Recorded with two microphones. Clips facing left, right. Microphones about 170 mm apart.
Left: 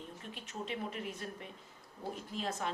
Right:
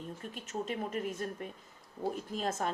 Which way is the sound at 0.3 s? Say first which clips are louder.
Right 4 dB; 45° right (ahead or behind).